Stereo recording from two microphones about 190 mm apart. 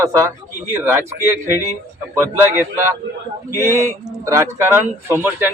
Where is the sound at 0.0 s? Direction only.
15° right (ahead or behind).